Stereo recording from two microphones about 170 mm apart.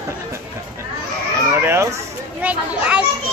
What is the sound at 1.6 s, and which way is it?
Children playing, 15° right (ahead or behind).